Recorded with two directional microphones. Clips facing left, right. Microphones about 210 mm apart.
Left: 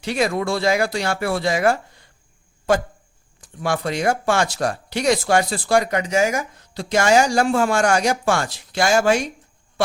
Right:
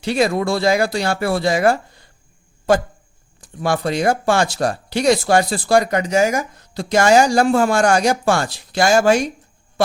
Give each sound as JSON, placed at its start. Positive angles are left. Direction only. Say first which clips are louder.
{"t": 0.0, "sound": "speech", "louder": "right 3 dB", "side_deg": -30}
{"t": 3.4, "sound": "speech", "louder": "right 3 dB", "side_deg": -35}